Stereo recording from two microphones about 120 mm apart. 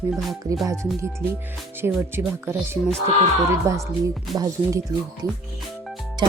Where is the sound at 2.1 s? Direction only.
20° right (ahead or behind).